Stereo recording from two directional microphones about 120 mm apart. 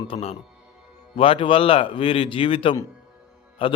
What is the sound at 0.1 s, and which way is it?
A man's voice, 60° left (ahead or behind).